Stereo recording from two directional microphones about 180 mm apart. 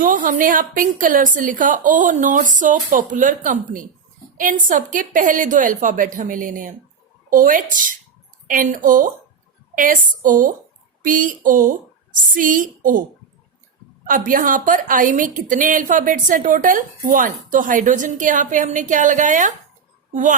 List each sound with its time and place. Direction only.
0.0 s a woman's voice: 45° right (ahead or behind)
14.1 s a woman's voice: 50° right (ahead or behind)